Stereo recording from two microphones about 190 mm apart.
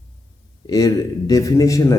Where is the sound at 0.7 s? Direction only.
20° left (ahead or behind).